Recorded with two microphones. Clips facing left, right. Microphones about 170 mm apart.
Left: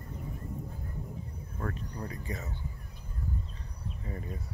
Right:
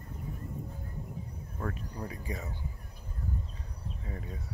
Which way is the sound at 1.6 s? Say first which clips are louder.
Even; 5° right (ahead or behind).